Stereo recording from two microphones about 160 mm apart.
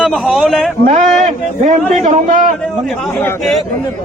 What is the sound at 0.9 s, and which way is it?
A man's voice, 45° right (ahead or behind).